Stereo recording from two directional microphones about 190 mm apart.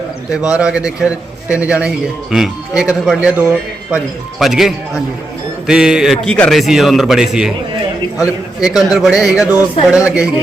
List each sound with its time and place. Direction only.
0.3 s a man's voice: 5° right (ahead or behind)